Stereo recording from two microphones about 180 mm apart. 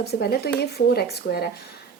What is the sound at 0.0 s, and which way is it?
Speech, 60° left (ahead or behind).